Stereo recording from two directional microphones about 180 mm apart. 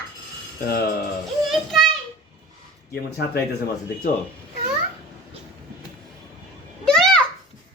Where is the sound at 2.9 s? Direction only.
60° left (ahead or behind).